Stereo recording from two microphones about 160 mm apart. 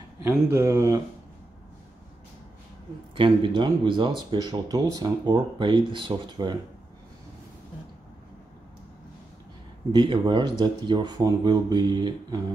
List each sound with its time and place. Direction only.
0.5 s speech: 15° right (ahead or behind)
3.2 s speech: 30° right (ahead or behind)
9.9 s speech: 30° right (ahead or behind)